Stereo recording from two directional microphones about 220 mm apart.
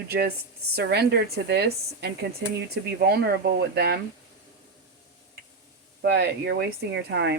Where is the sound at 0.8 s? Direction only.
50° right (ahead or behind).